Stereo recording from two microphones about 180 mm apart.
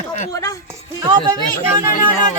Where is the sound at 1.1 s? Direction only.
20° right (ahead or behind).